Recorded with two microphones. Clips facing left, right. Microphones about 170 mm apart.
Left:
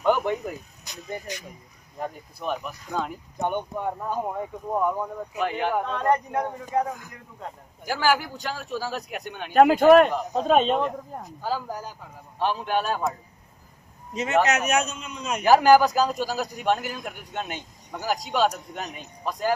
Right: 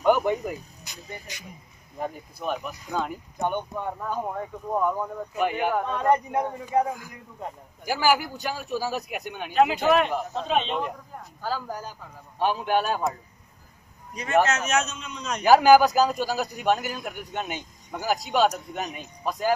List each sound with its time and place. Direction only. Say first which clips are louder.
0.0 s a sound: right 1 dB; 5° right (ahead or behind)
2.0 s a man's voice: right 1 dB; centre (ahead or behind)
3.3 s speech: left 1 dB; 10° left (ahead or behind)
5.4 s a man's voice: right 1 dB; 10° right (ahead or behind)
9.5 s speech: left 6 dB; 50° left (ahead or behind)
11.4 s speech: left 1 dB; 15° left (ahead or behind)
12.4 s a man's voice: right 1 dB; 10° right (ahead or behind)
14.1 s speech: left 1 dB; 20° left (ahead or behind)
15.4 s a man's voice: right 1 dB; 5° right (ahead or behind)